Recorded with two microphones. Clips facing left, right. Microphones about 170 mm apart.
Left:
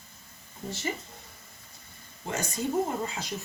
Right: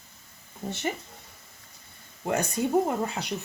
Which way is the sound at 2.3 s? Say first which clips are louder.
Right 5 dB; 60° right (ahead or behind).